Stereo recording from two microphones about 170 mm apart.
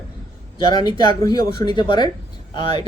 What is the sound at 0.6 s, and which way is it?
Speech, 25° left (ahead or behind).